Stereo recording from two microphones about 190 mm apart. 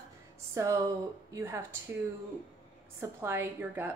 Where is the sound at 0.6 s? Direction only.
15° right (ahead or behind).